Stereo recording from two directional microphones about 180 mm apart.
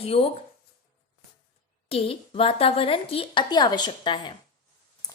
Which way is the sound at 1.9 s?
30° left (ahead or behind).